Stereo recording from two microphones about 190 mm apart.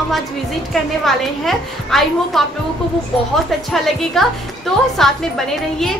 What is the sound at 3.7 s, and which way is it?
A woman's voice, centre (ahead or behind).